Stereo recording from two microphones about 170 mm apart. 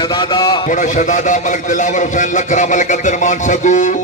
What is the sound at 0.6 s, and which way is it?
A man's voice, 45° left (ahead or behind).